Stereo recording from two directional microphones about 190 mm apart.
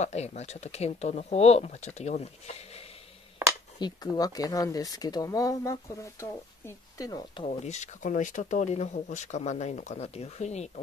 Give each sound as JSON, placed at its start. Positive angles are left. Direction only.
{"t": 0.0, "sound": "speech", "side_deg": 35}
{"t": 3.8, "sound": "speech", "side_deg": 20}
{"t": 7.4, "sound": "speech", "side_deg": 35}